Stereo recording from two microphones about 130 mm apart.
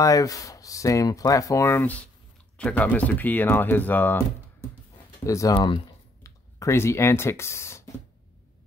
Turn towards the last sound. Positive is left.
turn(degrees=20)  # may be behind; listen again after turning